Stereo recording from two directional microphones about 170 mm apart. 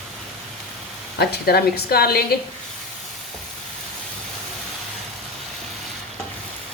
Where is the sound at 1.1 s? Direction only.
70° left (ahead or behind).